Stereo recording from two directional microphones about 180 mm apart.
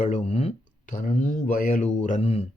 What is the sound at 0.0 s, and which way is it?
Speech, 40° left (ahead or behind).